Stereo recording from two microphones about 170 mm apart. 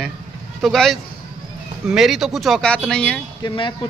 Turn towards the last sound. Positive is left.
turn(degrees=30)  # may be behind; listen again after turning